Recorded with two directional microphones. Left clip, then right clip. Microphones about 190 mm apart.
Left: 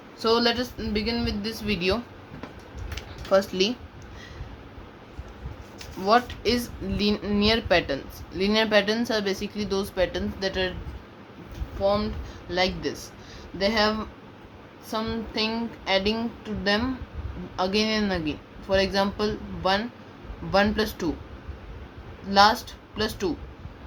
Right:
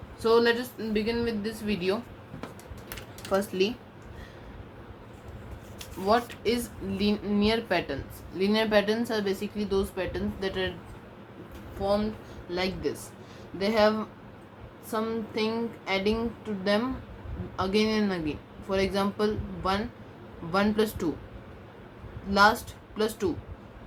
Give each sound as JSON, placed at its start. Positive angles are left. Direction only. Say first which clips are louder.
{"t": 0.2, "sound": "speech", "louder": "even", "side_deg": 45}
{"t": 3.2, "sound": "speech", "louder": "left 5 dB", "side_deg": 30}
{"t": 6.1, "sound": "speech", "louder": "left 4 dB", "side_deg": 45}
{"t": 12.5, "sound": "speech", "louder": "left 4 dB", "side_deg": 30}
{"t": 22.3, "sound": "speech", "louder": "left 3 dB", "side_deg": 30}